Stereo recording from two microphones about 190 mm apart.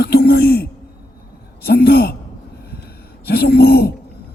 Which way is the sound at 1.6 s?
60° left (ahead or behind).